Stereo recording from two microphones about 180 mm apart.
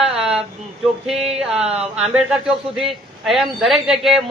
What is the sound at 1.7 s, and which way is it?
A man's voice, 5° right (ahead or behind).